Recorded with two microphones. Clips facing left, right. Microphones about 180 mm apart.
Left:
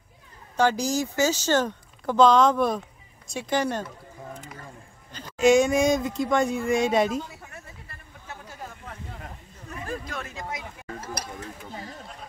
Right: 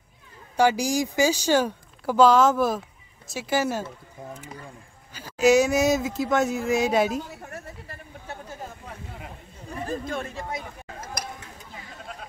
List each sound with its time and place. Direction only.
0.6 s speech: 10° right (ahead or behind)
5.1 s speech: 5° right (ahead or behind)
8.5 s hubbub: 15° right (ahead or behind)
9.8 s speech: 25° right (ahead or behind)
11.0 s a sound: 35° left (ahead or behind)